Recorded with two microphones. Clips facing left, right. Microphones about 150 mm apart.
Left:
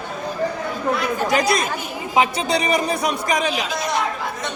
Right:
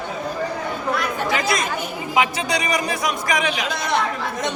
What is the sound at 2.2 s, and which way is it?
A man's voice, 25° left (ahead or behind).